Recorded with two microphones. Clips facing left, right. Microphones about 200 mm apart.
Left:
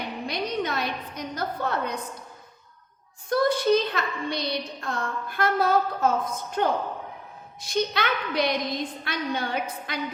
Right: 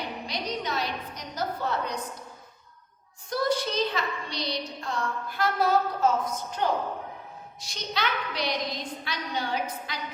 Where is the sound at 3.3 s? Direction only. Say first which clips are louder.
Left 6 dB; 55° left (ahead or behind).